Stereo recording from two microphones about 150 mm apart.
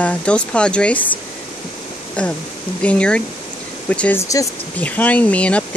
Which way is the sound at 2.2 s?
10° left (ahead or behind).